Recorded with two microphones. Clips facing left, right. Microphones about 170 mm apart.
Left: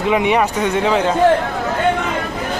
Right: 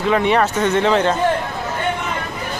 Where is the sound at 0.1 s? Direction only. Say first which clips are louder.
Even; 10° left (ahead or behind).